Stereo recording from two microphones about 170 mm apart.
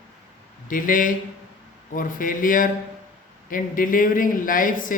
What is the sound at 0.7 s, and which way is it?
Speech, 55° left (ahead or behind).